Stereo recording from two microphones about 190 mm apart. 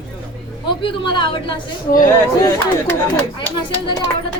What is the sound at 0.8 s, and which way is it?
A woman's voice, 25° left (ahead or behind).